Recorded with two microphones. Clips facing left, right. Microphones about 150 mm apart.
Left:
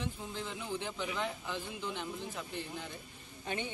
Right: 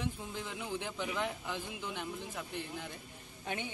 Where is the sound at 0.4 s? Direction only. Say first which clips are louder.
Left 1 dB; 10° right (ahead or behind).